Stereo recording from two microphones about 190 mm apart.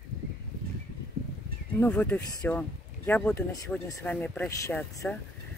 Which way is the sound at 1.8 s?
10° left (ahead or behind).